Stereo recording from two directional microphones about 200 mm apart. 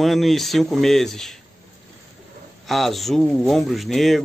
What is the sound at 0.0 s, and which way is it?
Speech, centre (ahead or behind).